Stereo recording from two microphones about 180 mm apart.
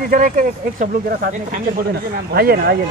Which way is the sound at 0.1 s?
50° right (ahead or behind).